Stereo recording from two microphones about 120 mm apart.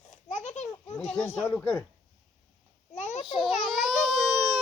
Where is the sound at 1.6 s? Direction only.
10° left (ahead or behind).